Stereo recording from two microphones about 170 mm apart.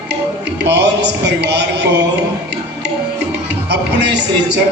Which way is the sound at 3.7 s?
90° right.